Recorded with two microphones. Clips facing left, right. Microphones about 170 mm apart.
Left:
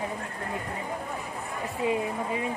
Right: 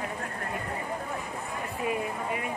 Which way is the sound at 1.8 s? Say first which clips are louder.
Left 3 dB; 25° left (ahead or behind).